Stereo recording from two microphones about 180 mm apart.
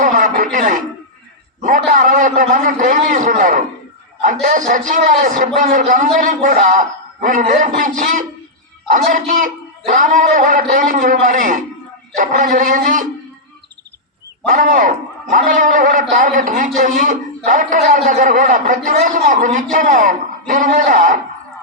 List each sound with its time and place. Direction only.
0.0 s a sound: 45° right (ahead or behind)
4.4 s a man's voice: 45° right (ahead or behind)
14.5 s a man's voice: 45° right (ahead or behind)